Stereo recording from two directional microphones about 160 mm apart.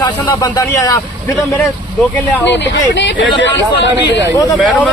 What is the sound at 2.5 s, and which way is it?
Speech, 90° left.